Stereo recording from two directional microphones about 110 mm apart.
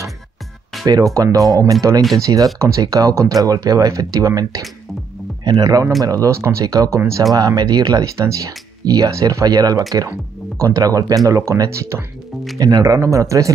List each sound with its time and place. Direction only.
1.1 s speech: 35° right (ahead or behind)
7.3 s speech: 35° right (ahead or behind)